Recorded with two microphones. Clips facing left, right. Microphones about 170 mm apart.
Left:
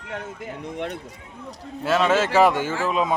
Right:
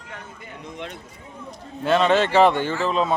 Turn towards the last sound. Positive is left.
turn(degrees=10)  # may be behind; listen again after turning